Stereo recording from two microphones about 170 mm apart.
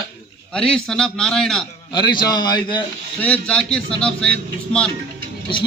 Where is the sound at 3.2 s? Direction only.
5° left (ahead or behind).